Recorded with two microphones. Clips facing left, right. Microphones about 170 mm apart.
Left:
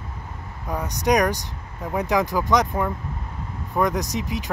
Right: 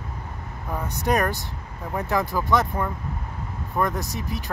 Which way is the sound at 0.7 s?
15° left (ahead or behind).